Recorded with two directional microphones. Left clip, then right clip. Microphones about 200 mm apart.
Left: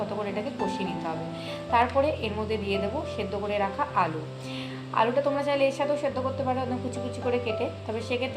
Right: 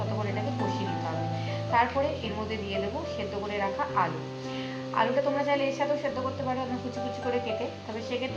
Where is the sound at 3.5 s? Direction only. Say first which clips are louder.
Left 2 dB; 45° left (ahead or behind).